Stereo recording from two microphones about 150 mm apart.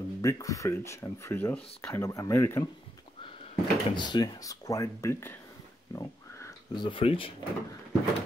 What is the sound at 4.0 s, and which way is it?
Speech, 30° left (ahead or behind).